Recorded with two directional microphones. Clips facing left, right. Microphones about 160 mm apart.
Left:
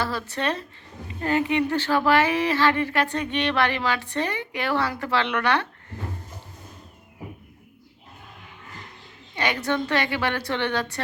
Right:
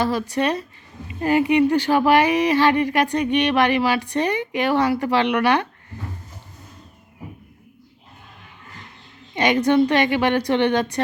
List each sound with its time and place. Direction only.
0.0 s speech: 15° right (ahead or behind)
9.3 s speech: 20° right (ahead or behind)